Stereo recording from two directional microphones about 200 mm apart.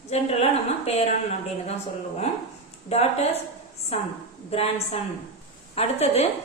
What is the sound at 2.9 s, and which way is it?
Speech, 30° left (ahead or behind).